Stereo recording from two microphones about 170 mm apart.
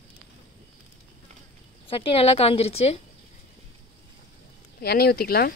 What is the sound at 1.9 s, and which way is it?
A woman's voice, 30° left (ahead or behind).